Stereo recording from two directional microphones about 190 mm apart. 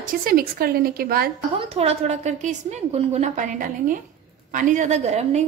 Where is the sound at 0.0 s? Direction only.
50° right (ahead or behind).